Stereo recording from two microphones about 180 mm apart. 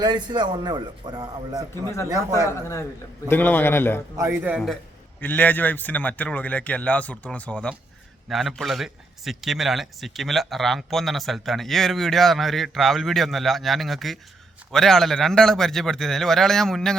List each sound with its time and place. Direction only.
0.0 s a man's voice: 25° right (ahead or behind)
2.5 s a man's voice: 15° left (ahead or behind)
4.2 s a man's voice: 10° right (ahead or behind)
5.2 s a man's voice: 10° left (ahead or behind)